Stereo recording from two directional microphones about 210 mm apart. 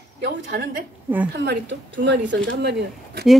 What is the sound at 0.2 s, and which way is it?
A woman's voice, 45° right (ahead or behind).